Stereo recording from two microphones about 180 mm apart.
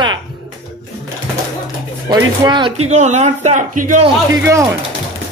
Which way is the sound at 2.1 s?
25° right (ahead or behind).